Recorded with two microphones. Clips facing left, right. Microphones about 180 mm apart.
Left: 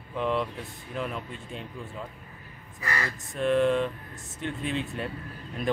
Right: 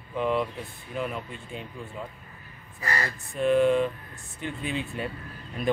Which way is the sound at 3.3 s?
5° right (ahead or behind).